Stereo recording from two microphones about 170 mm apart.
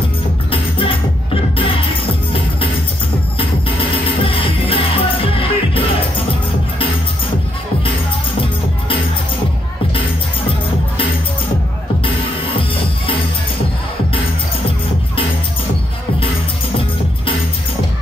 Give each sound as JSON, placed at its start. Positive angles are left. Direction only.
{"t": 0.5, "sound": "music", "side_deg": 30}
{"t": 4.2, "sound": "music", "side_deg": 30}
{"t": 12.0, "sound": "music", "side_deg": 30}